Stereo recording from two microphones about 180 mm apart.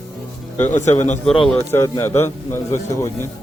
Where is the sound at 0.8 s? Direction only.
40° left (ahead or behind).